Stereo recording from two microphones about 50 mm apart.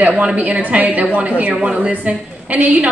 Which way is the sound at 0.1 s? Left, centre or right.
Right.